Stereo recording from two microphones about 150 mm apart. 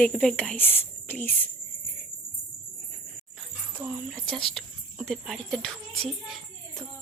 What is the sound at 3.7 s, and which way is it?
Speech, 10° right (ahead or behind).